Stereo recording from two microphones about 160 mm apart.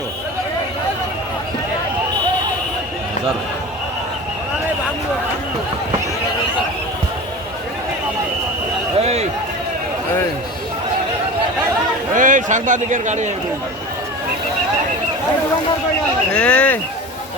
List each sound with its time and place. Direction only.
9.0 s a sound: 40° right (ahead or behind)
12.1 s a man's voice: 55° right (ahead or behind)
16.3 s speech: 5° left (ahead or behind)